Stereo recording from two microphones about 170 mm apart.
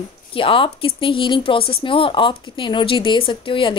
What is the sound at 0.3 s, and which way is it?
A woman's voice, 30° left (ahead or behind).